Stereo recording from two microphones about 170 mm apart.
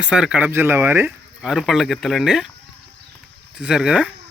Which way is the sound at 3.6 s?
5° right (ahead or behind).